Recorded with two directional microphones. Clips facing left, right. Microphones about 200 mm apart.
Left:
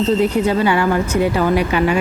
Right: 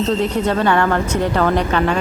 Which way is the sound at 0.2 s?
10° left (ahead or behind).